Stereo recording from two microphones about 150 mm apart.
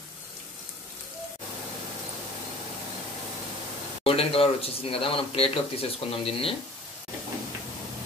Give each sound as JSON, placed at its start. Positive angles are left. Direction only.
{"t": 4.0, "sound": "speech", "side_deg": 40}